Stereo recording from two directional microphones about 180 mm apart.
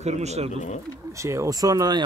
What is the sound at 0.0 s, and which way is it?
Speech, 40° right (ahead or behind).